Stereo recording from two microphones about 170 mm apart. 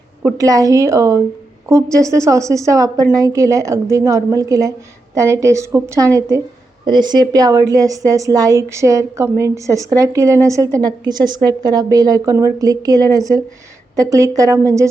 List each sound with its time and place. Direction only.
0.2 s a woman's voice: 20° right (ahead or behind)